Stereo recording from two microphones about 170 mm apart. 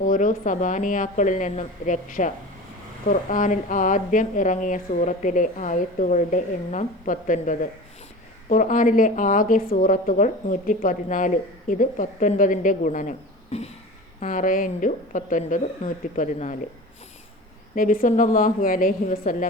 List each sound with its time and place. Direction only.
0.0 s a woman's voice: 50° left (ahead or behind)
14.2 s a woman's voice: 50° left (ahead or behind)
17.7 s a woman's voice: 55° left (ahead or behind)